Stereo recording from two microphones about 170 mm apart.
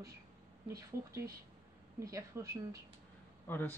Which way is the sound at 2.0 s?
20° right (ahead or behind).